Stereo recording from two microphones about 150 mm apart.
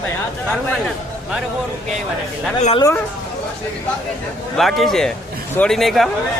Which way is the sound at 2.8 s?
20° left (ahead or behind).